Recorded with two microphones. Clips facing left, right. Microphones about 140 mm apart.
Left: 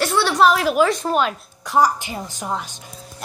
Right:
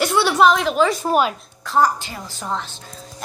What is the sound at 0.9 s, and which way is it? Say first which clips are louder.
Speech: right 1 dB; 5° right (ahead or behind).